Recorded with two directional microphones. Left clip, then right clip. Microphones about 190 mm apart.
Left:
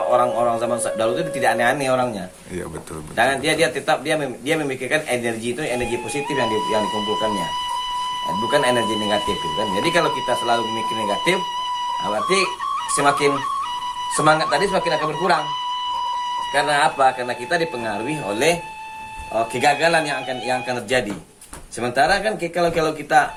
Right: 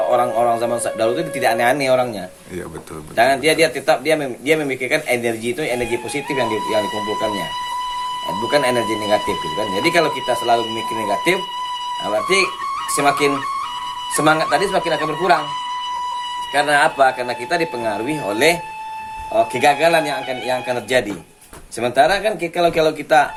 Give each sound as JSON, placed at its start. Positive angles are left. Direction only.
{"t": 0.1, "sound": "a man's voice", "side_deg": -40}
{"t": 3.2, "sound": "speech", "side_deg": -40}
{"t": 8.4, "sound": "speech", "side_deg": -40}
{"t": 16.5, "sound": "speech", "side_deg": -40}
{"t": 19.5, "sound": "speech", "side_deg": -35}